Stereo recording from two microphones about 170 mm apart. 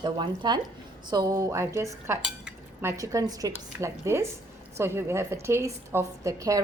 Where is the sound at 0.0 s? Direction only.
25° right (ahead or behind).